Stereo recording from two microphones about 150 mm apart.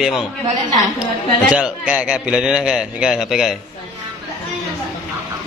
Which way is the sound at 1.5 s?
5° right (ahead or behind).